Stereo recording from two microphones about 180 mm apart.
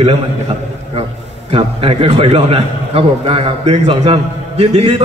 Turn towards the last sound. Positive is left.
turn(degrees=-35)  # may be behind; listen again after turning